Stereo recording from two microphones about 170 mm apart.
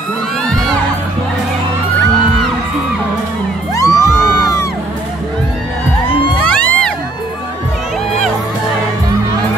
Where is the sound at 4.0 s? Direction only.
Centre (ahead or behind).